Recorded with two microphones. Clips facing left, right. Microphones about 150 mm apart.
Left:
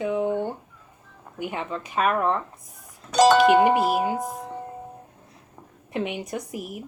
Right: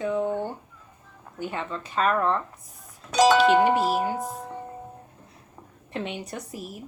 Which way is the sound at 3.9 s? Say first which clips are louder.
Left 2 dB; 15° left (ahead or behind).